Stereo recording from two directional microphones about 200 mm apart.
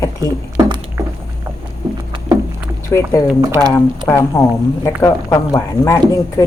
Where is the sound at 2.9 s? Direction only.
15° left (ahead or behind).